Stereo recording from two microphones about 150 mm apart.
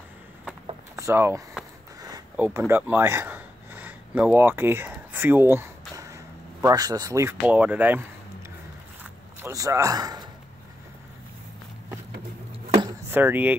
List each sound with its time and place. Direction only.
0.9 s speech: 20° right (ahead or behind)
2.0 s a sound: 25° right (ahead or behind)
2.3 s speech: 15° right (ahead or behind)
9.4 s a man's voice: 20° right (ahead or behind)
13.1 s speech: 10° right (ahead or behind)